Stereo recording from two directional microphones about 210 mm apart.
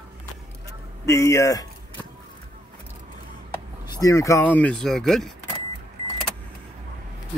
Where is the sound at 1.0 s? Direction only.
15° left (ahead or behind).